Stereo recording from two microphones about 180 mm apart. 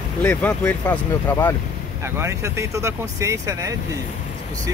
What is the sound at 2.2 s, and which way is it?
Speech, 15° right (ahead or behind).